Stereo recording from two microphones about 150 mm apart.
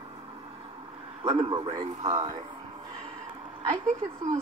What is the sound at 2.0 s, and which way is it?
Speech, 25° right (ahead or behind).